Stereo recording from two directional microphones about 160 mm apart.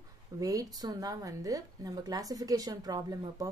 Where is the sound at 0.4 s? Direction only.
20° right (ahead or behind).